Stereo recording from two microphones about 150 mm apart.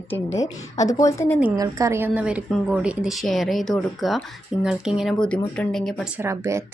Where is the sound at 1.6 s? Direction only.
20° right (ahead or behind); by 6.1 s 5° left (ahead or behind).